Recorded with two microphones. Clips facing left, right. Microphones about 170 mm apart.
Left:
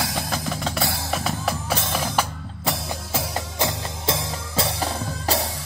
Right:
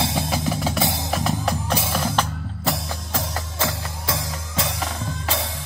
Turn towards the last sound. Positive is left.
turn(degrees=35)  # may be behind; listen again after turning